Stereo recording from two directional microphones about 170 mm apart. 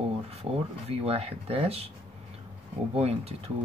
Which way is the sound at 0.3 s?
35° right (ahead or behind).